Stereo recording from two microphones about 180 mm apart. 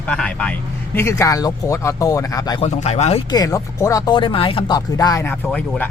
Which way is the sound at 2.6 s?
35° left (ahead or behind).